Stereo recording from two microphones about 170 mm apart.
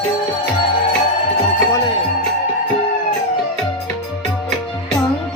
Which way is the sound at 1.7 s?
20° left (ahead or behind).